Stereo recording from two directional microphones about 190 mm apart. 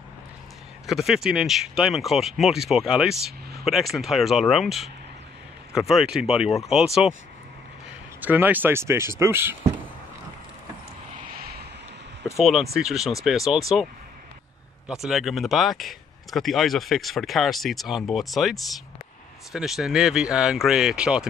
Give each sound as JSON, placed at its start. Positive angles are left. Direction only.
{"t": 0.8, "sound": "speech", "side_deg": 0}
{"t": 8.2, "sound": "speech", "side_deg": -10}
{"t": 11.3, "sound": "vehicle", "side_deg": -55}
{"t": 12.7, "sound": "speech", "side_deg": 0}
{"t": 14.9, "sound": "speech", "side_deg": 0}